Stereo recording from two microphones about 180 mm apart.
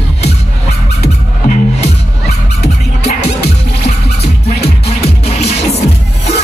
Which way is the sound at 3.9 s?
35° left (ahead or behind).